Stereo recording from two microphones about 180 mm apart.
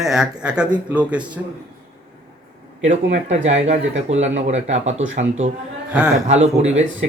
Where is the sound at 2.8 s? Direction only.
40° right (ahead or behind).